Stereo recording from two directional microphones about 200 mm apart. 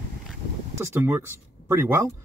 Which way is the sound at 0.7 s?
10° right (ahead or behind).